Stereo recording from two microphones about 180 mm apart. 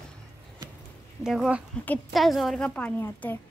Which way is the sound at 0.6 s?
20° right (ahead or behind).